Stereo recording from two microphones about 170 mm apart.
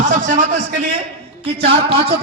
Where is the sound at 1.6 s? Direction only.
35° right (ahead or behind).